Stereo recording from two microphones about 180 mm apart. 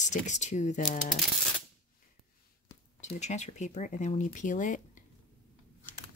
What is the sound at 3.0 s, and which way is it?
Speech, 40° left (ahead or behind).